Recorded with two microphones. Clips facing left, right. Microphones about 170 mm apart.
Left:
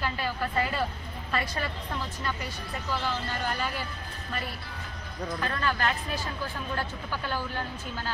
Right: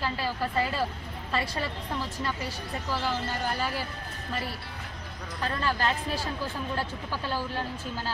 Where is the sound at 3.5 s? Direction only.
35° right (ahead or behind).